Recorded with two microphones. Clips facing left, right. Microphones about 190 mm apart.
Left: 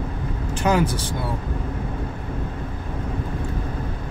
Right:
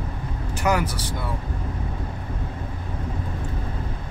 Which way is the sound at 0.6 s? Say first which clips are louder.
Left 3 dB; 25° left (ahead or behind).